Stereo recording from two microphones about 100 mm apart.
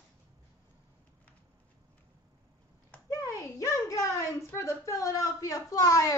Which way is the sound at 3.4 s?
35° left (ahead or behind).